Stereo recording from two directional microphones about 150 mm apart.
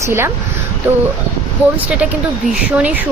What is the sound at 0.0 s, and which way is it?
A woman's voice, 15° right (ahead or behind).